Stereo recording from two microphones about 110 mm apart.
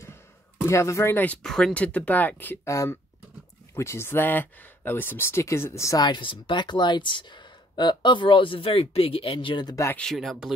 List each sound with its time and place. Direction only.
0.7 s speech: 25° left (ahead or behind); by 9.8 s 45° left (ahead or behind)
9.9 s speech: 5° left (ahead or behind)